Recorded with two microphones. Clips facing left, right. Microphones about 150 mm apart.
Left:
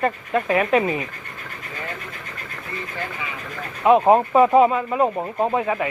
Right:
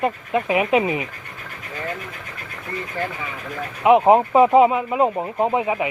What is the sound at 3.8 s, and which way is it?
Speech, 15° right (ahead or behind).